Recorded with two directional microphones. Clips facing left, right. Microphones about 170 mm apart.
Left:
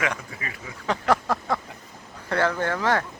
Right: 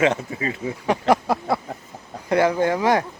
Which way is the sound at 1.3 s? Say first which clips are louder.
Right 4 dB; 10° right (ahead or behind).